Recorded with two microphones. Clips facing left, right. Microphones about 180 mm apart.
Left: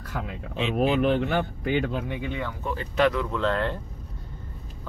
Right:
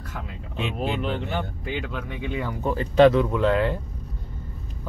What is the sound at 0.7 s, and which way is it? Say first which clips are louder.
Speech: left 7 dB; 60° left (ahead or behind).